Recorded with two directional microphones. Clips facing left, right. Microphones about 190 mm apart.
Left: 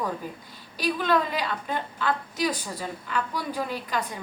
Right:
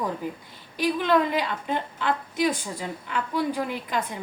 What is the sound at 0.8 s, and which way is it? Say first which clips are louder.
A woman's voice: right 2 dB; 20° right (ahead or behind).